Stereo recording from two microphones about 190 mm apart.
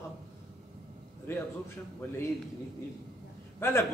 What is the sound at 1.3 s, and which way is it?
Speech, 10° left (ahead or behind).